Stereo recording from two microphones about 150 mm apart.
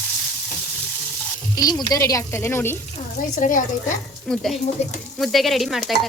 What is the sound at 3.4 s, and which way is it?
Speech, 60° left (ahead or behind).